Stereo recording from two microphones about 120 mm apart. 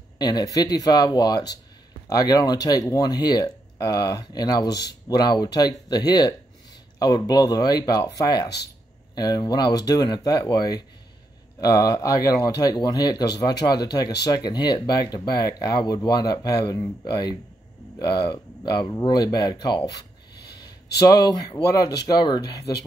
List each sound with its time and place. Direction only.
0.2 s speech: 35° left (ahead or behind)
21.3 s speech: 35° left (ahead or behind)